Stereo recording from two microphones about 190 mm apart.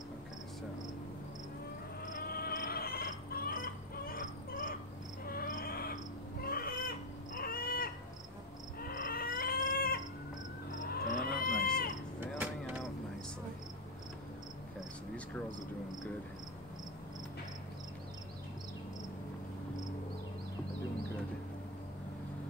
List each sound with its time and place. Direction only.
2.2 s chicken: 50° left (ahead or behind)
5.2 s cricket: 50° left (ahead or behind)
6.4 s a sound: 50° left (ahead or behind)
8.8 s cat: 50° left (ahead or behind)
10.9 s a sound: 50° left (ahead or behind)
12.2 s vehicle: 10° right (ahead or behind)